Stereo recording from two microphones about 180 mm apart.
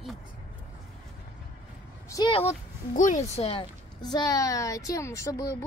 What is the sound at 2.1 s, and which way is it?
Speech, 20° left (ahead or behind).